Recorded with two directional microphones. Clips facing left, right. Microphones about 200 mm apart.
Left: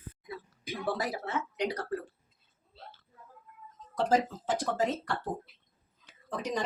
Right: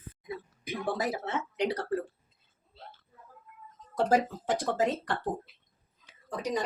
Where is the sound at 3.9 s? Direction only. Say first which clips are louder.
Right 1 dB; 15° right (ahead or behind).